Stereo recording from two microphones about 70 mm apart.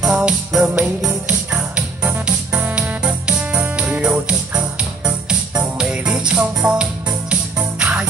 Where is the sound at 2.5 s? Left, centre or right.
Right.